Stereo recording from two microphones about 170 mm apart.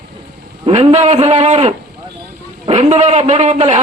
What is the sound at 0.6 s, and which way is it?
A man's voice, 40° right (ahead or behind).